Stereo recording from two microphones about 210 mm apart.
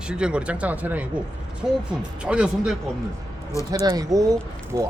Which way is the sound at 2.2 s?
5° right (ahead or behind).